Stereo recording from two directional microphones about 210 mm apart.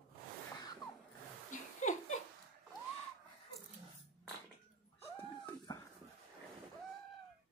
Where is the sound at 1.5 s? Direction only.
40° left (ahead or behind).